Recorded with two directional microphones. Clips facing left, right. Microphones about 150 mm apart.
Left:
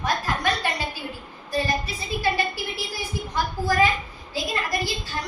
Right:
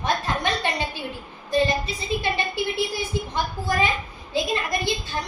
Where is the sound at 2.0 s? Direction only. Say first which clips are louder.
Left 1 dB; 25° right (ahead or behind).